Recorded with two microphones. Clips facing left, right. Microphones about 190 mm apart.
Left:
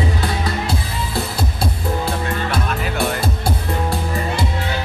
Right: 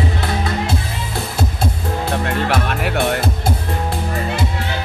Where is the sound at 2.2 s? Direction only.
70° right (ahead or behind).